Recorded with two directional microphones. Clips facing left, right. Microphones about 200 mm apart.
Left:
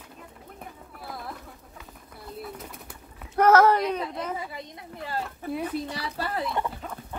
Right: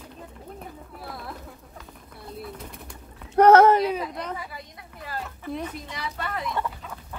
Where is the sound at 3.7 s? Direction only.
5° right (ahead or behind).